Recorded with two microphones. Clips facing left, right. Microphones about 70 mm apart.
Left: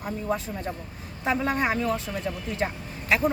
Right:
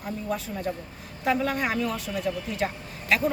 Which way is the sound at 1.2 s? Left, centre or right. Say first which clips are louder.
Even; left.